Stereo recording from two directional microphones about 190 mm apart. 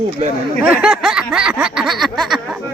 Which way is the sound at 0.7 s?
5° right (ahead or behind).